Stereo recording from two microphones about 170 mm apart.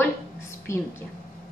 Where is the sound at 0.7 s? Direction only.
15° left (ahead or behind).